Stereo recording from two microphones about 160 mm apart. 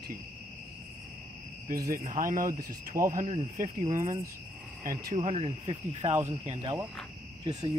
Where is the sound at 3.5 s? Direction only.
50° right (ahead or behind).